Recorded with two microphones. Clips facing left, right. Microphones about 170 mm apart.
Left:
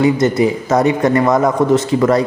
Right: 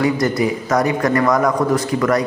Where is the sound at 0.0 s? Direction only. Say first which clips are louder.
Left 4 dB; 25° left (ahead or behind).